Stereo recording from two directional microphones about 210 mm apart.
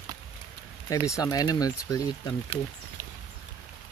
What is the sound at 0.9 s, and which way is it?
Speech, 15° left (ahead or behind).